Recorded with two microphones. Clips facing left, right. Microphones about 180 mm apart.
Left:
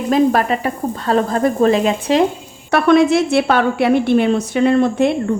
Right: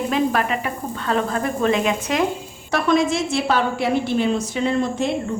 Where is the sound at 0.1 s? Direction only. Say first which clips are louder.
Left 9 dB; 40° left (ahead or behind).